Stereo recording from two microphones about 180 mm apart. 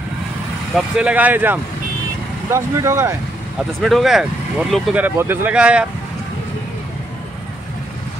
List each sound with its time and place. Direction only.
0.7 s speech: 5° right (ahead or behind)
3.5 s speech: centre (ahead or behind)
5.0 s speech: 10° right (ahead or behind)